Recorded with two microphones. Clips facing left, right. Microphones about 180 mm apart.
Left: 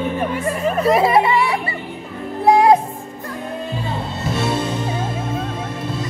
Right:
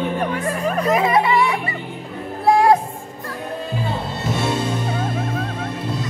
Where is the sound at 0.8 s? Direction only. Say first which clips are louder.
Left 3 dB; 35° left (ahead or behind).